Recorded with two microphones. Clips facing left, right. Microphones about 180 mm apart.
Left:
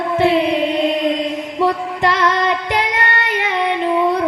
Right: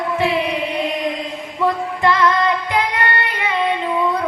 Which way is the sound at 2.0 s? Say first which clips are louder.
Right 1 dB; 75° left (ahead or behind).